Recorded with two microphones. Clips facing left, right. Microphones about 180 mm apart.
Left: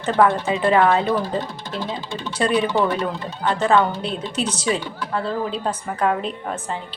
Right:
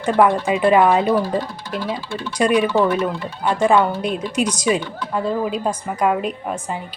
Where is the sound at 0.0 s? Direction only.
10° right (ahead or behind).